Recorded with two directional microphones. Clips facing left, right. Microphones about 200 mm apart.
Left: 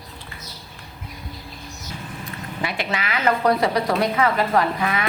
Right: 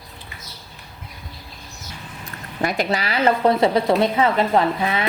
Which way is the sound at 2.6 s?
40° right (ahead or behind).